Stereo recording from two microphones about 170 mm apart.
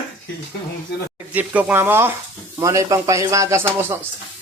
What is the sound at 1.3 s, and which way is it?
Speech, 10° right (ahead or behind).